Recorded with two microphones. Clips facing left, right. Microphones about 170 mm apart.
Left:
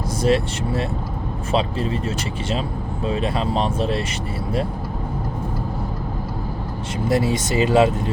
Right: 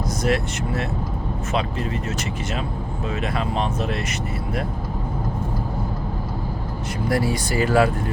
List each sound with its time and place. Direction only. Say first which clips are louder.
0.2 s speech: left 5 dB; 30° left (ahead or behind)
7.1 s speech: left 3 dB; 20° left (ahead or behind)